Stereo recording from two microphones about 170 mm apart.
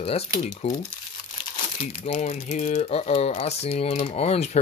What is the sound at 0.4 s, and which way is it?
Speech, 45° left (ahead or behind).